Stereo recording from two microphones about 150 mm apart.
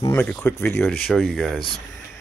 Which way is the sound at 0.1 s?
10° left (ahead or behind).